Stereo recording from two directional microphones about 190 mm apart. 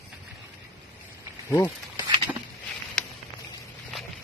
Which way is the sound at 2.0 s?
25° right (ahead or behind).